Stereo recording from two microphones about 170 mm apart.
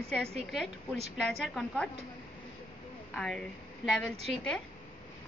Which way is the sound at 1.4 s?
Centre (ahead or behind).